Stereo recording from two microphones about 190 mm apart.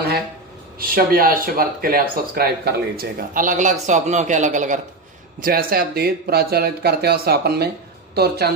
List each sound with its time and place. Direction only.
0.8 s a man's voice: 50° right (ahead or behind)